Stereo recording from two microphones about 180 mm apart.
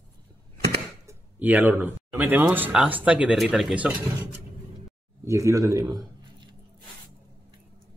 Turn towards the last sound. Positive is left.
turn(degrees=-20)  # may be behind; listen again after turning